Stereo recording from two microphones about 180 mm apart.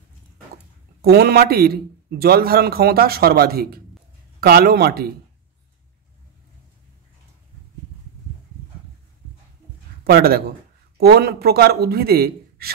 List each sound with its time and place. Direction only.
1.0 s a man's voice: 60° right (ahead or behind)
10.0 s a man's voice: 60° right (ahead or behind)